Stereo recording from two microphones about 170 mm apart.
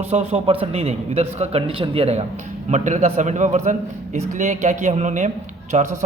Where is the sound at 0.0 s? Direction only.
40° right (ahead or behind).